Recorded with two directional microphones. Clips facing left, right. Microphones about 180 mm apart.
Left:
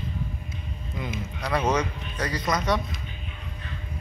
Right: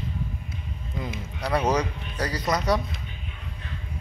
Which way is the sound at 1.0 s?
30° right (ahead or behind).